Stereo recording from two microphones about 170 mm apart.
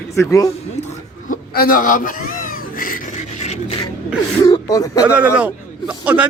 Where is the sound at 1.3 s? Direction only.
60° left (ahead or behind).